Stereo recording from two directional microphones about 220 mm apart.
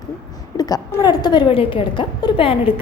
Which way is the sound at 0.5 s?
15° left (ahead or behind).